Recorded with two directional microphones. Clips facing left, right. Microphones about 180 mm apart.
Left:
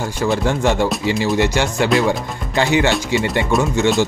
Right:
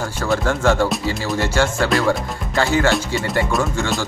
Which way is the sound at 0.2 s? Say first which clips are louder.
Left 1 dB; 20° left (ahead or behind).